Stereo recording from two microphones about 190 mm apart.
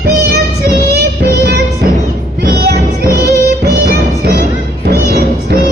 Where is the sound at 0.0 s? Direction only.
60° right (ahead or behind).